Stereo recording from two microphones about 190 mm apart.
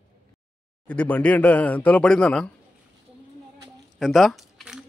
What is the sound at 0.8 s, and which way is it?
Speech, 10° left (ahead or behind).